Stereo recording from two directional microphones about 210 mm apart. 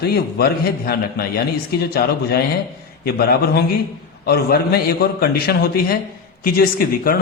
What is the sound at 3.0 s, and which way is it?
A man's voice, 45° left (ahead or behind).